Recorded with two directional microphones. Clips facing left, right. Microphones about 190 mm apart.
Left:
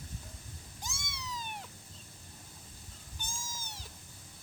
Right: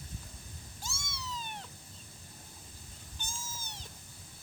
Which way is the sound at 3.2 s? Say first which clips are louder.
Even; 10° left (ahead or behind).